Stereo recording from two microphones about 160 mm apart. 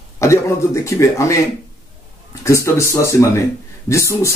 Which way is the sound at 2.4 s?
20° left (ahead or behind).